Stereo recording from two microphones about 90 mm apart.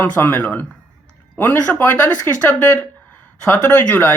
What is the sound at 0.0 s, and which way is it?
Speech, 20° left (ahead or behind).